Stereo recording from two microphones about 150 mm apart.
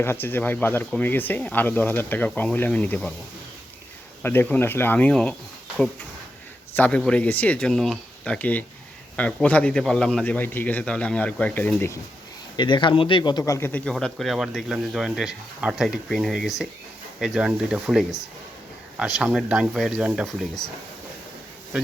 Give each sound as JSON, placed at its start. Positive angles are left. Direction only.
{"t": 0.0, "sound": "a man's voice", "side_deg": 15}
{"t": 4.2, "sound": "a man's voice", "side_deg": 15}
{"t": 6.7, "sound": "a man's voice", "side_deg": 10}
{"t": 12.5, "sound": "speech", "side_deg": 30}
{"t": 13.9, "sound": "speech", "side_deg": 0}